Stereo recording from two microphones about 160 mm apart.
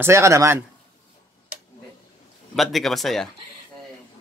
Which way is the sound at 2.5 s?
Centre (ahead or behind).